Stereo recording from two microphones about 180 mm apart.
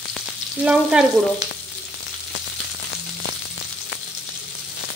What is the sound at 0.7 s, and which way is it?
Frying, 5° right (ahead or behind).